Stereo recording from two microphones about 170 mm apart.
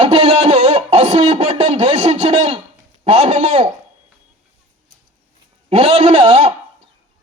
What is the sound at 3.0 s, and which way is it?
Speech, 40° right (ahead or behind).